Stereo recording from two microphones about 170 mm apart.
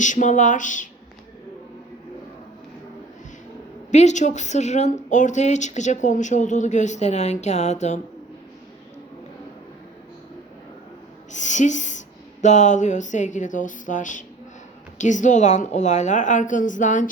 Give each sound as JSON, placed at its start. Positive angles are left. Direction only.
{"t": 0.0, "sound": "a woman's voice", "side_deg": 45}
{"t": 3.9, "sound": "a woman's voice", "side_deg": 45}
{"t": 11.3, "sound": "a woman's voice", "side_deg": 45}